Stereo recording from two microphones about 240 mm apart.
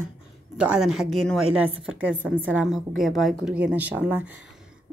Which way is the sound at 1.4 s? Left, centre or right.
Right.